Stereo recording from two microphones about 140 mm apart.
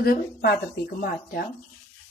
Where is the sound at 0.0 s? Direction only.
90° left.